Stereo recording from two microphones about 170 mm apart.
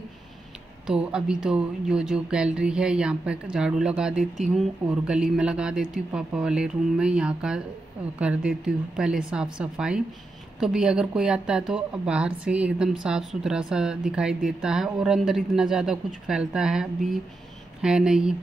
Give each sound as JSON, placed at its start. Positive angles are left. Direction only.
{"t": 0.8, "sound": "speech", "side_deg": -5}